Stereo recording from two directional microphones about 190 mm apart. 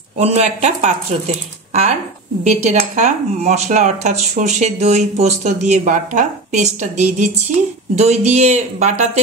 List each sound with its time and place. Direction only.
0.2 s speech: 35° right (ahead or behind)